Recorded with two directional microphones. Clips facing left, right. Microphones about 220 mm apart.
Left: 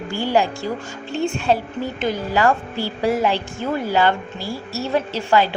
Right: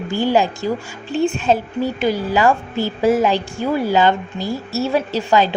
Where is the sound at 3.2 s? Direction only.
15° right (ahead or behind).